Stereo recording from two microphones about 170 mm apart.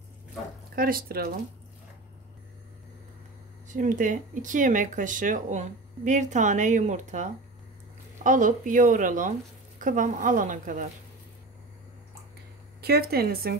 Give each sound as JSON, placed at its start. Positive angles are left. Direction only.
{"t": 0.7, "sound": "speech", "side_deg": -60}
{"t": 3.6, "sound": "speech", "side_deg": -50}
{"t": 12.8, "sound": "speech", "side_deg": -70}